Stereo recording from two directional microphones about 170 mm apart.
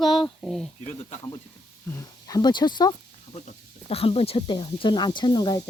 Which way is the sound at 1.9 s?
20° left (ahead or behind).